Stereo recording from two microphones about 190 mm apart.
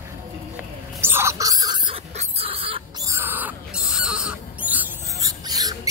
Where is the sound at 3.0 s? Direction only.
15° right (ahead or behind).